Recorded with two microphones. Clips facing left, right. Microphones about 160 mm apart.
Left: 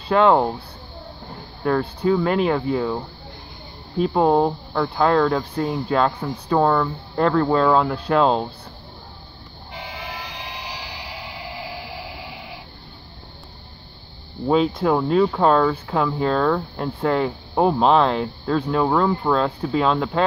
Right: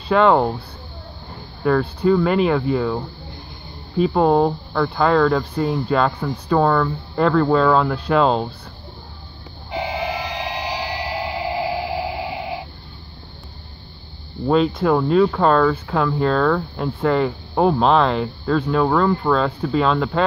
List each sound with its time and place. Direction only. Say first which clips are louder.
0.1 s speech: right 1 dB; centre (ahead or behind)
1.6 s speech: right 3 dB; centre (ahead or behind)
9.7 s music: right 10 dB; 90° right
14.5 s speech: right 2 dB; centre (ahead or behind)